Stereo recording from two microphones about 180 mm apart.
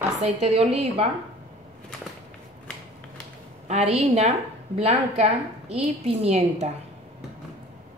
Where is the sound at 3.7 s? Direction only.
35° right (ahead or behind).